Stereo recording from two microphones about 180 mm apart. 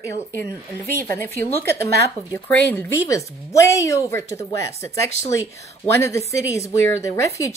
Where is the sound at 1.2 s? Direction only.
15° left (ahead or behind).